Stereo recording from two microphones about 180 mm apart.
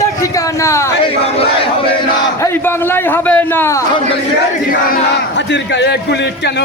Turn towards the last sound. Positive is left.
turn(degrees=70)  # may be behind; listen again after turning